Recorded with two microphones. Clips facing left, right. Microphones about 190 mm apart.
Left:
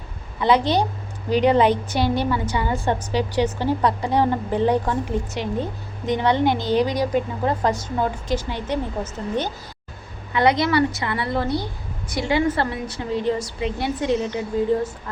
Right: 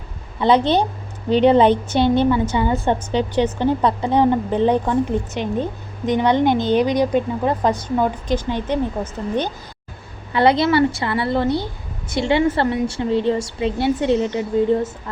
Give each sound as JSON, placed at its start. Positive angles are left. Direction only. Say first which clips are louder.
{"t": 0.3, "sound": "a woman's voice", "louder": "right 3 dB", "side_deg": -25}
{"t": 10.3, "sound": "a woman's voice", "louder": "right 3 dB", "side_deg": -30}